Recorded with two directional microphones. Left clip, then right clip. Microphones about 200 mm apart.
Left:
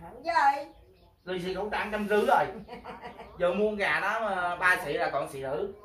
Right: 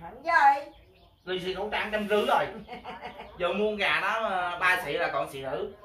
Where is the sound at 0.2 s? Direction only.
15° left (ahead or behind).